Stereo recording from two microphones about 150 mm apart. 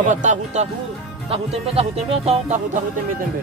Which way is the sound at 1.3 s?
40° right (ahead or behind).